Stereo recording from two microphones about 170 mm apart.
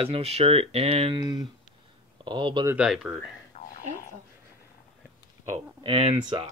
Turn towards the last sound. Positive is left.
turn(degrees=-30)  # may be behind; listen again after turning